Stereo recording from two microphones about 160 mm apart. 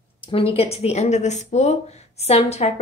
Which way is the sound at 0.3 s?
35° left (ahead or behind).